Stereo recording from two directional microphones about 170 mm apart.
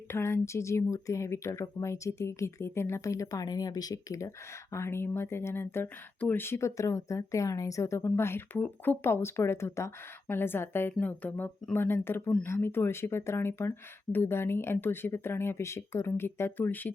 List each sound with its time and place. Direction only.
0.1 s speech: 15° left (ahead or behind)